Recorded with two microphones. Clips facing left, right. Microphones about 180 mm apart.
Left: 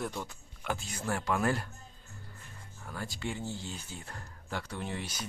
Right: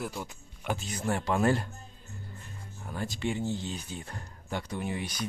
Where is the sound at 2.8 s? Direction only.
20° right (ahead or behind).